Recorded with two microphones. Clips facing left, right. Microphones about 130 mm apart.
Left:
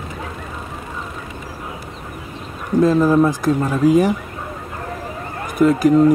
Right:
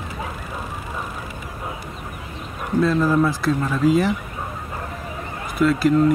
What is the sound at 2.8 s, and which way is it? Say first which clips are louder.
Speech: left 5 dB; 15° left (ahead or behind).